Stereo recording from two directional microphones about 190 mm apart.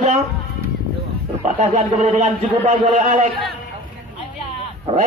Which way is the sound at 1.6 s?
35° right (ahead or behind).